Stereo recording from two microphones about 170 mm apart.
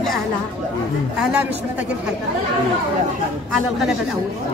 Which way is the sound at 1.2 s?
5° right (ahead or behind).